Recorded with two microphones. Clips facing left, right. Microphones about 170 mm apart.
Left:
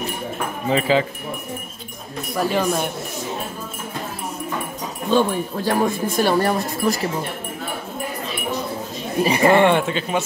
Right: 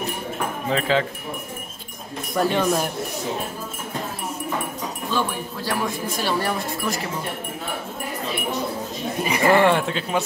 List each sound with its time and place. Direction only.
0.7 s speech: 5° left (ahead or behind)
2.3 s speech: centre (ahead or behind)
5.1 s speech: 50° left (ahead or behind)
9.2 s speech: 30° left (ahead or behind)
9.7 s speech: centre (ahead or behind)